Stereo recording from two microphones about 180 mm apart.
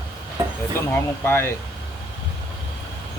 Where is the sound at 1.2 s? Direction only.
10° left (ahead or behind).